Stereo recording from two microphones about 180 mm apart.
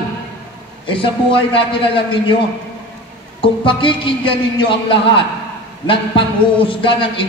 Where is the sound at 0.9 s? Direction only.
30° left (ahead or behind).